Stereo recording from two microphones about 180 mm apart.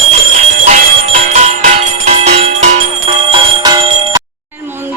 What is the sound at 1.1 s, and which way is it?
Music, 40° right (ahead or behind).